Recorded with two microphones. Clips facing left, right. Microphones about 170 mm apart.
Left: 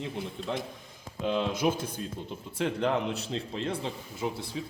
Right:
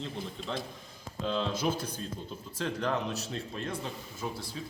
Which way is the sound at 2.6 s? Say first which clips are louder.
Left 4 dB; 20° left (ahead or behind).